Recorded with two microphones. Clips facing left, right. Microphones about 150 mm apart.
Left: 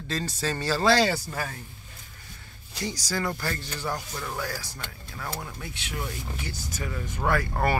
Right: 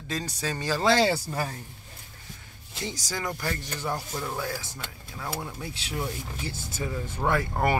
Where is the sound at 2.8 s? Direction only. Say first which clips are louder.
Left 3 dB; 20° right (ahead or behind).